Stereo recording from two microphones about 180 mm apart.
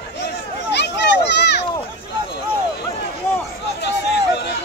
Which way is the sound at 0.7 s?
70° left (ahead or behind).